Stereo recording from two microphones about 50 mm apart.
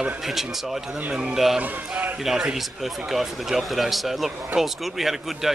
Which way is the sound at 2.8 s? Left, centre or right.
Centre.